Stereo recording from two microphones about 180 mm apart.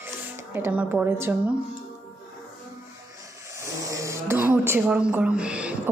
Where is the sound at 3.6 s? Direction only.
15° right (ahead or behind).